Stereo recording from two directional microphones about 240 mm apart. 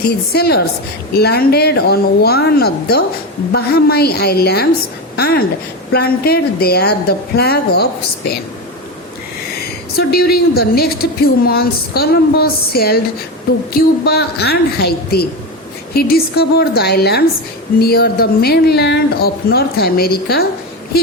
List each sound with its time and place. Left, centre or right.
0.3 s a woman's voice: left
10.0 s a woman's voice: left
14.0 s a woman's voice: left